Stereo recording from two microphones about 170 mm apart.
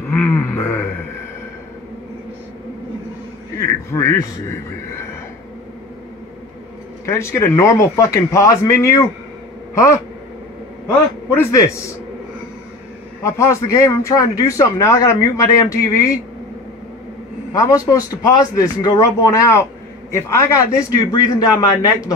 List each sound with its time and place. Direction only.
0.1 s a sound: 10° left (ahead or behind)
3.9 s speech: 20° left (ahead or behind)
7.1 s a man's voice: 15° left (ahead or behind)
11.2 s a man's voice: 15° left (ahead or behind)
13.2 s speech: 15° left (ahead or behind)
17.5 s speech: 20° left (ahead or behind)